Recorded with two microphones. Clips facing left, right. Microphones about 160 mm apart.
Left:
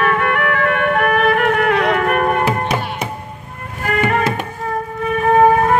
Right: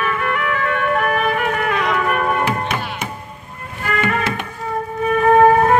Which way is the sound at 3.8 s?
40° left (ahead or behind).